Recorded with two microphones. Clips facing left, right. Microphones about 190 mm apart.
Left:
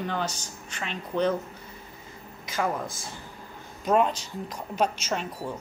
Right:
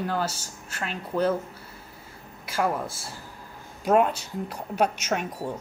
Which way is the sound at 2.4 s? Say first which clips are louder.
Right 2 dB; 10° right (ahead or behind).